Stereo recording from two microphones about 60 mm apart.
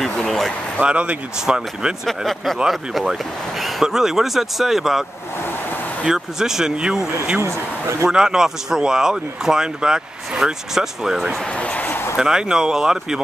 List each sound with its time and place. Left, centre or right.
0.7 s speech: right
2.0 s speech: centre
6.0 s speech: centre
8.1 s speech: centre
11.5 s a sound: left
12.2 s speech: centre